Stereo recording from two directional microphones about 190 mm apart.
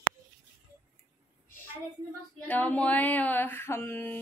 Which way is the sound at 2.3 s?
10° left (ahead or behind).